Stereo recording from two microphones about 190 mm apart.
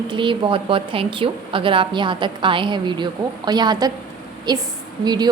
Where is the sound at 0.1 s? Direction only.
25° right (ahead or behind).